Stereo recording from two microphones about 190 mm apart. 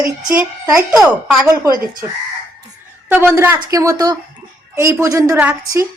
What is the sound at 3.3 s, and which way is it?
A woman's voice, 10° right (ahead or behind).